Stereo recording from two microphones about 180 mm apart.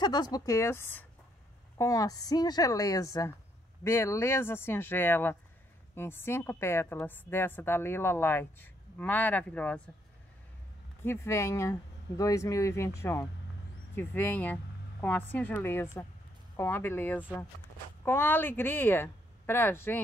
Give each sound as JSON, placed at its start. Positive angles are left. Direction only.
{"t": 0.0, "sound": "a woman's voice", "side_deg": 25}
{"t": 11.1, "sound": "a woman's voice", "side_deg": 15}